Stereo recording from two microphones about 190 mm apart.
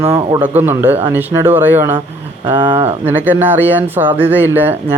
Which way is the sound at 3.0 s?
10° right (ahead or behind).